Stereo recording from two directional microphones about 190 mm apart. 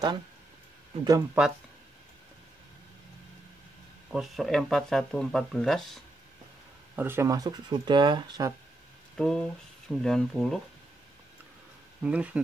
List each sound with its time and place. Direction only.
1.0 s speech: 15° right (ahead or behind)
4.1 s speech: centre (ahead or behind)
7.0 s speech: 10° right (ahead or behind)
9.1 s speech: 5° left (ahead or behind)
12.0 s speech: 5° right (ahead or behind)